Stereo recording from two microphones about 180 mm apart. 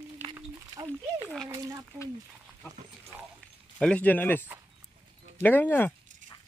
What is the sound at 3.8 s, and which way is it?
Speech, 5° left (ahead or behind).